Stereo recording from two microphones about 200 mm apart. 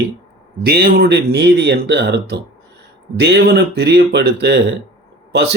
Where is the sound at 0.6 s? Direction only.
50° right (ahead or behind).